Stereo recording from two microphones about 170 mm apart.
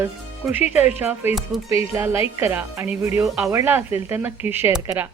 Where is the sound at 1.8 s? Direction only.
15° right (ahead or behind).